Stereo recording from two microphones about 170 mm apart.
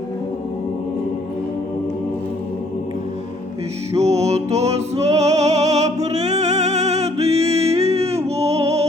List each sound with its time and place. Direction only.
3.9 s music: 40° right (ahead or behind)